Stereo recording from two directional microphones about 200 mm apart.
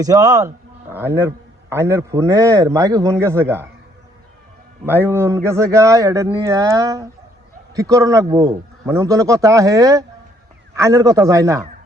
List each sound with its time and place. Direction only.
0.0 s speech: 15° right (ahead or behind)
4.9 s speech: 10° right (ahead or behind)